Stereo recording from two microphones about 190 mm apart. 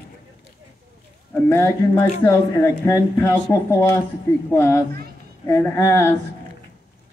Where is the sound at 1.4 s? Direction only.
15° left (ahead or behind).